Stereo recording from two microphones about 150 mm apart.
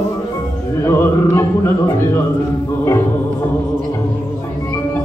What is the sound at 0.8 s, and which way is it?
Music, 20° left (ahead or behind).